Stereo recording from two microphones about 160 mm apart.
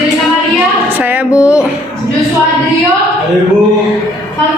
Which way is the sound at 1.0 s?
10° right (ahead or behind).